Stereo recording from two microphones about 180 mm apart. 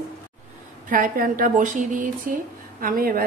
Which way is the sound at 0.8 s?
50° right (ahead or behind).